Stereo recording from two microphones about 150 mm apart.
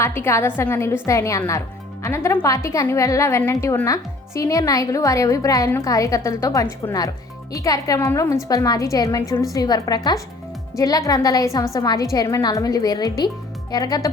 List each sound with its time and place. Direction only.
0.0 s a woman's voice: 15° left (ahead or behind)